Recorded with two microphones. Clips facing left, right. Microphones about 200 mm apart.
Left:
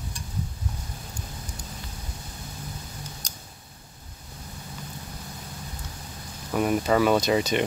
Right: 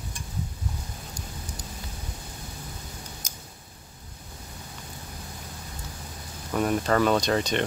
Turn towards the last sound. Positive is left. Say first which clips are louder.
# left 2 dB
turn(degrees=10)  # may be behind; listen again after turning